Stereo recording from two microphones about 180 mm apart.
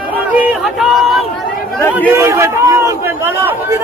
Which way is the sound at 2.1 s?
15° right (ahead or behind).